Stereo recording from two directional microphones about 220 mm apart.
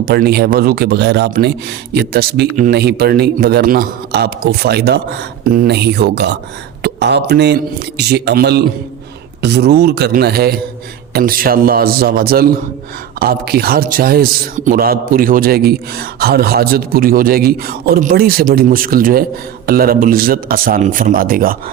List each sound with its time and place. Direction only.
0.0 s a man's voice: 45° right (ahead or behind)